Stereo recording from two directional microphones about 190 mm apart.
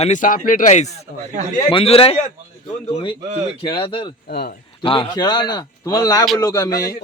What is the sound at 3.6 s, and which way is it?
Speech, 25° left (ahead or behind).